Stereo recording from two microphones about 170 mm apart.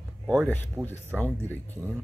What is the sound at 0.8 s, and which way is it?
Speech, 20° right (ahead or behind).